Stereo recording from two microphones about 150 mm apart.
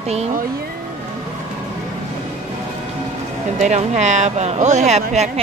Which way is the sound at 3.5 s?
50° right (ahead or behind).